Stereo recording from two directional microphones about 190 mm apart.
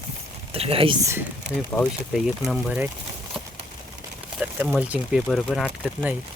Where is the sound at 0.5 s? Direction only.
30° right (ahead or behind).